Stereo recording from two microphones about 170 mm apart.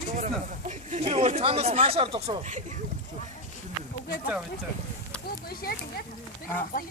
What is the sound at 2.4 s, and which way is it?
Speech, 45° right (ahead or behind).